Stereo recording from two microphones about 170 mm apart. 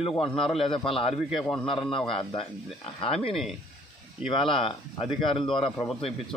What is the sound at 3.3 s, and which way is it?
Speech, centre (ahead or behind).